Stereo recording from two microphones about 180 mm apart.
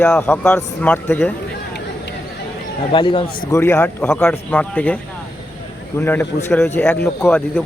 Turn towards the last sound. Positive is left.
turn(degrees=10)  # may be behind; listen again after turning